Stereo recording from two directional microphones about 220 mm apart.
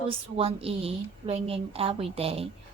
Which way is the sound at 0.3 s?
25° right (ahead or behind).